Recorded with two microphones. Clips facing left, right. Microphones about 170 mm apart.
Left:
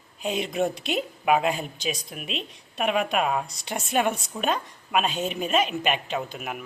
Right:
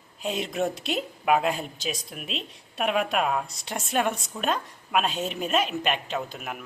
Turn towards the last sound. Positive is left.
turn(degrees=5)  # may be behind; listen again after turning